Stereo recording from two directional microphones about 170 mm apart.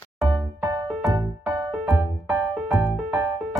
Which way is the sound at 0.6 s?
25° right (ahead or behind).